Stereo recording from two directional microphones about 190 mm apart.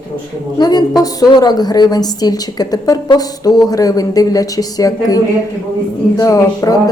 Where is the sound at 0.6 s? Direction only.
20° left (ahead or behind).